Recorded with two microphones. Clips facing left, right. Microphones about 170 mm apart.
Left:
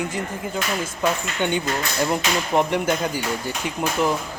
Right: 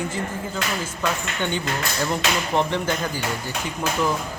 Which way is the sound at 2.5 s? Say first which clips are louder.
Left 3 dB; 10° left (ahead or behind).